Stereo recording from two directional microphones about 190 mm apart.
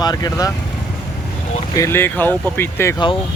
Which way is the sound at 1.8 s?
10° left (ahead or behind).